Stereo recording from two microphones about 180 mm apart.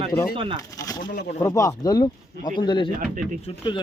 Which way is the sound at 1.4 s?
15° left (ahead or behind).